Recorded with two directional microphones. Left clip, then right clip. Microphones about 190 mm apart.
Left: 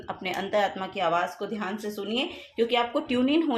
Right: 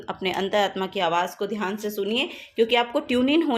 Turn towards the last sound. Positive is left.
turn(degrees=-35)  # may be behind; listen again after turning